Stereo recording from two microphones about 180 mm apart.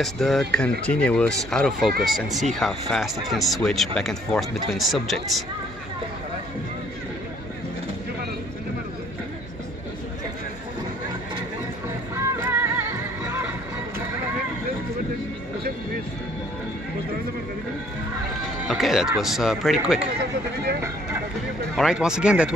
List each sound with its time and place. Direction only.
0.0 s speech: centre (ahead or behind)
12.2 s music: 15° right (ahead or behind)
18.7 s speech: centre (ahead or behind)
21.7 s speech: 5° right (ahead or behind)